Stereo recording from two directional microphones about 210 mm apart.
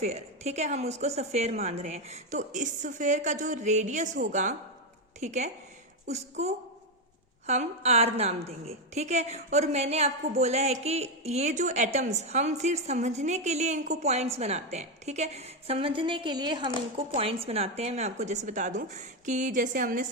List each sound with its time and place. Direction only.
0.0 s a woman's voice: 30° right (ahead or behind)